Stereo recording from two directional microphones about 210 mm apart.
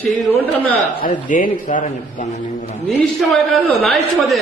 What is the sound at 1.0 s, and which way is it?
Speech, 40° left (ahead or behind).